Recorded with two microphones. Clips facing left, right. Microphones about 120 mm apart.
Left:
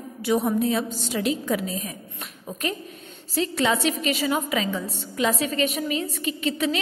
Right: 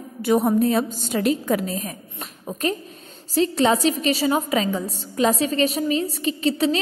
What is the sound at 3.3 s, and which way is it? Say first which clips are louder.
A woman's voice: right 5 dB; 35° right (ahead or behind).